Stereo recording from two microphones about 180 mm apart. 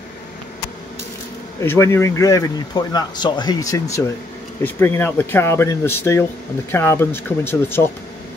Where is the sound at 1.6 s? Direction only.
15° left (ahead or behind).